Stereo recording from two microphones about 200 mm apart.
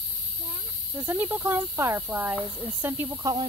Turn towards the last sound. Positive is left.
turn(degrees=-20)  # may be behind; listen again after turning